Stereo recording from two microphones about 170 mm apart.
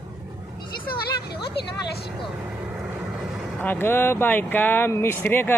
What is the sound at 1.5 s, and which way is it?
Speech, 75° left (ahead or behind).